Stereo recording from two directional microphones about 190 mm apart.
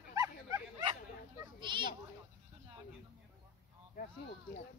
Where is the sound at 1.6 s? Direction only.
25° right (ahead or behind).